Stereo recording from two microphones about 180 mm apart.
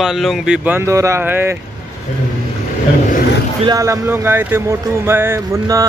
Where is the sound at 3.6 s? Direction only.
20° right (ahead or behind).